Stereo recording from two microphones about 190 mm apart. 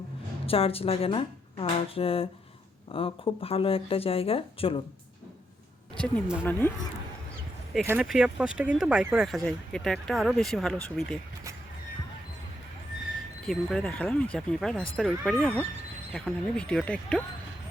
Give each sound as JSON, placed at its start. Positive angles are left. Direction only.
{"t": 0.4, "sound": "speech", "side_deg": 30}
{"t": 6.0, "sound": "speech", "side_deg": 5}
{"t": 7.9, "sound": "speech", "side_deg": -5}
{"t": 13.4, "sound": "speech", "side_deg": 0}